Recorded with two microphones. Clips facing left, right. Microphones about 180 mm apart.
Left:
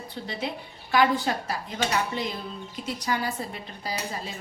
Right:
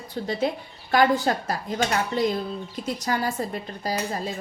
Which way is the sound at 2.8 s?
45° right (ahead or behind).